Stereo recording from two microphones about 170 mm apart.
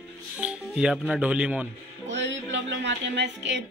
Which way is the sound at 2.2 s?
90° right.